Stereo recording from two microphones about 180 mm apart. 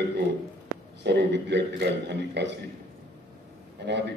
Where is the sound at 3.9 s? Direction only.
75° right (ahead or behind).